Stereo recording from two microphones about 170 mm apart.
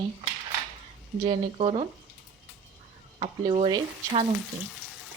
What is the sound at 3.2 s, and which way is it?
Speech, 30° right (ahead or behind).